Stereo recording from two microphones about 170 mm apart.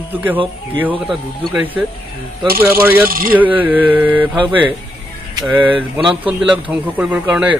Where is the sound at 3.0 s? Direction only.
60° right (ahead or behind).